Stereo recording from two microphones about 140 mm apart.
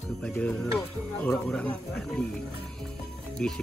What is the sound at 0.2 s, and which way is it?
Speech, 5° left (ahead or behind).